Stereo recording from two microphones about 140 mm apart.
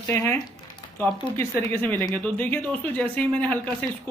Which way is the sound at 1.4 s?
20° left (ahead or behind).